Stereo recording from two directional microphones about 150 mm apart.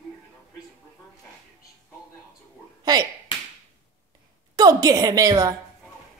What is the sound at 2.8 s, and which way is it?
Slap, 25° right (ahead or behind).